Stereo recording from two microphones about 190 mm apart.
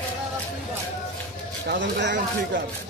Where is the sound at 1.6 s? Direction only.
65° right (ahead or behind).